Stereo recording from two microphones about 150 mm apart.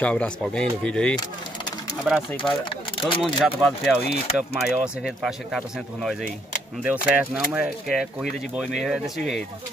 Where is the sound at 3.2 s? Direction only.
Centre (ahead or behind).